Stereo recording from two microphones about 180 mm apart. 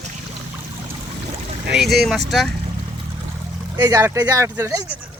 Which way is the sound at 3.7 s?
20° right (ahead or behind).